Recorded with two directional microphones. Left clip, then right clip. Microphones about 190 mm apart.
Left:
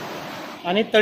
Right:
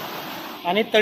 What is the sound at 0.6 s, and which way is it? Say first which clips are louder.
Speech: even; 5° left (ahead or behind).